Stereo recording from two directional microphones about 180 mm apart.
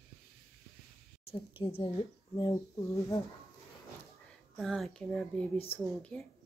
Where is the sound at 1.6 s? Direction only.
35° left (ahead or behind).